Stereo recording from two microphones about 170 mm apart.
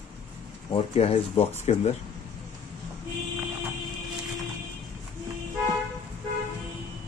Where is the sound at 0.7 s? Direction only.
35° left (ahead or behind).